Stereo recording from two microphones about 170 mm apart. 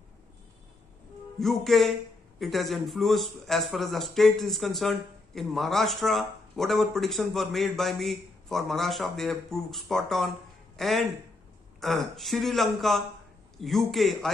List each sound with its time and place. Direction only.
1.4 s a man's voice: centre (ahead or behind)